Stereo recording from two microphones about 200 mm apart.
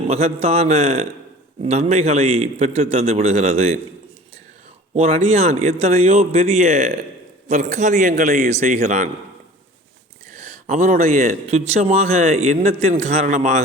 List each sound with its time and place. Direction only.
0.1 s speech: 30° right (ahead or behind)
4.9 s speech: 30° right (ahead or behind); by 8.4 s 45° right (ahead or behind)
8.4 s speech: 35° right (ahead or behind)
10.7 s speech: 40° right (ahead or behind)